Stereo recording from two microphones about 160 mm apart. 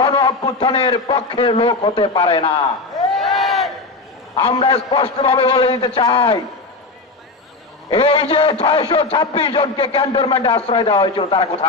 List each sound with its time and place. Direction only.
0.0 s a man's voice: 30° left (ahead or behind)
3.1 s a sound: centre (ahead or behind)
4.4 s a man's voice: 35° left (ahead or behind)
7.9 s a man's voice: 35° left (ahead or behind)